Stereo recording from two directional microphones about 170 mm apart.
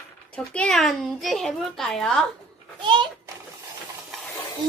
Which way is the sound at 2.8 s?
30° right (ahead or behind).